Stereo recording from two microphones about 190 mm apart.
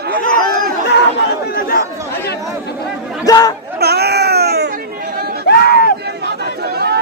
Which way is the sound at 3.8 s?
60° right (ahead or behind).